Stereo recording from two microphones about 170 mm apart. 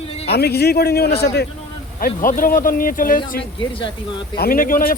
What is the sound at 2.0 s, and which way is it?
Speech, 55° left (ahead or behind).